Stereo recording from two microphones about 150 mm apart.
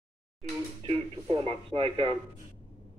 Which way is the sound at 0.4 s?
40° right (ahead or behind).